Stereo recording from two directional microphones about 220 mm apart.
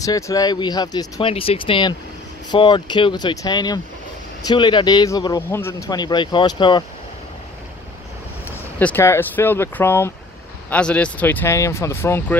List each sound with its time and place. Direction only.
0.0 s speech: 15° left (ahead or behind)
8.5 s speech: 10° left (ahead or behind)